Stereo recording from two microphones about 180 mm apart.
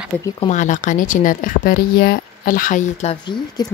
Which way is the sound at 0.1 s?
10° left (ahead or behind).